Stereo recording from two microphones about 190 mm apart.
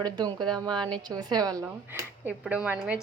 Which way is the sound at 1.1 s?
20° right (ahead or behind).